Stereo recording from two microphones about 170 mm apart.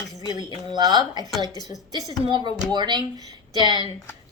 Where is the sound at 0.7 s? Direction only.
25° right (ahead or behind).